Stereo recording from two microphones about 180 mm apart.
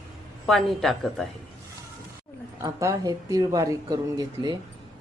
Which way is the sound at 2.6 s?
15° right (ahead or behind).